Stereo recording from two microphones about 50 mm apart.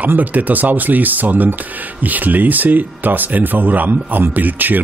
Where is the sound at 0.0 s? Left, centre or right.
Right.